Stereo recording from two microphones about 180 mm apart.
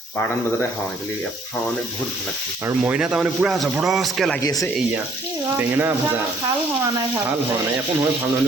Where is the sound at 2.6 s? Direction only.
10° right (ahead or behind).